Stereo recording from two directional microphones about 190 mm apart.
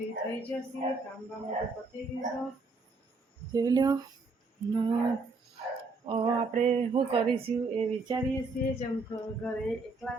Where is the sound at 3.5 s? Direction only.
20° right (ahead or behind).